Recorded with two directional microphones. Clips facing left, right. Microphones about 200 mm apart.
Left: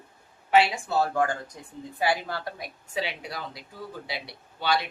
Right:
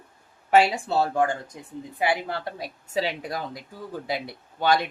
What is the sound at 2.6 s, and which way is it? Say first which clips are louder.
A woman's voice: right 5 dB; 40° right (ahead or behind).